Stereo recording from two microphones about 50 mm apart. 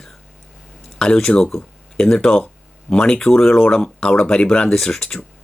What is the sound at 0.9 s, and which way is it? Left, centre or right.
Speech, centre.